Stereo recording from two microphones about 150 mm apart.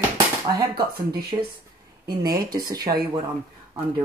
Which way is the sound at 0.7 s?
90° right.